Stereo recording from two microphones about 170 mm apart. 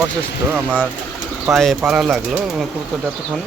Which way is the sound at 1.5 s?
Centre (ahead or behind).